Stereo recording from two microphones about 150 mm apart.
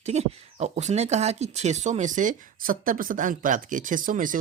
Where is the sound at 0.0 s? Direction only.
50° right (ahead or behind).